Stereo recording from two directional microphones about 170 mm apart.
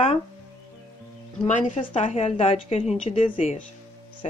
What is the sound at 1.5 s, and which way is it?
A woman's voice, 45° left (ahead or behind).